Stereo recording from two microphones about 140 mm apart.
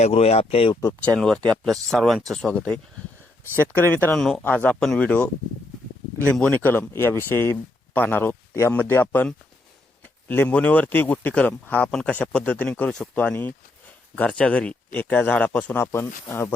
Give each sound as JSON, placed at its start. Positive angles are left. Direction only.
{"t": 0.0, "sound": "speech", "side_deg": 50}
{"t": 0.8, "sound": "a man's voice", "side_deg": 20}
{"t": 1.1, "sound": "a man's voice", "side_deg": 5}
{"t": 4.1, "sound": "a man's voice", "side_deg": 5}
{"t": 6.3, "sound": "a man's voice", "side_deg": 10}